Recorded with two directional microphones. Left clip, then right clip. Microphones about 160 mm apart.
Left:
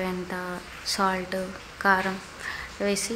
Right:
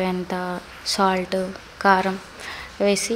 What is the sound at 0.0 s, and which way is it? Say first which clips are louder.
A woman's voice: right 6 dB; 25° right (ahead or behind).